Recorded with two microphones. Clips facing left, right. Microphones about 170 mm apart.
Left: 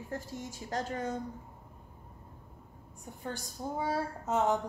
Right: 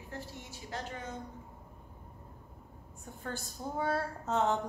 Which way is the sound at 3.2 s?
15° left (ahead or behind).